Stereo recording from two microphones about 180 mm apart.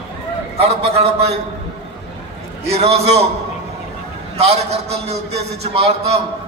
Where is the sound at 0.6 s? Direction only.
35° right (ahead or behind).